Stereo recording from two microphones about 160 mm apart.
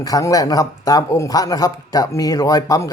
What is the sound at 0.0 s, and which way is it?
Speech, 20° left (ahead or behind).